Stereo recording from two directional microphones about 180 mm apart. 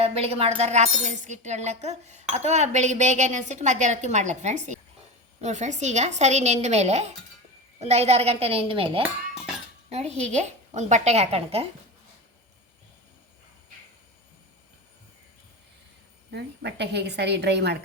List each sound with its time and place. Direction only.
0.0 s speech: 35° right (ahead or behind)
16.3 s a woman's voice: 70° right (ahead or behind)